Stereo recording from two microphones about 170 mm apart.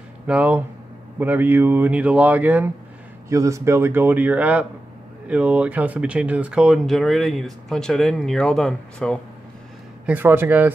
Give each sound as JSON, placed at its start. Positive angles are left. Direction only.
{"t": 0.3, "sound": "speech", "side_deg": -10}
{"t": 10.0, "sound": "speech", "side_deg": -10}